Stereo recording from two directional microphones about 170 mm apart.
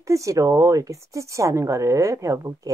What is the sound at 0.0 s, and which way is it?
Speech, 20° right (ahead or behind).